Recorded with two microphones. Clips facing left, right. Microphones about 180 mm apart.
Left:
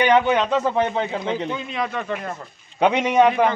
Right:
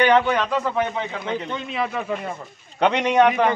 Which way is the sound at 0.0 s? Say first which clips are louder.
Left 1 dB; 15° left (ahead or behind).